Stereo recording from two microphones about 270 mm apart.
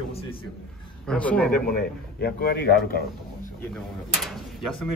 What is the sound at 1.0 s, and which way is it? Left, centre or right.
Speech, centre.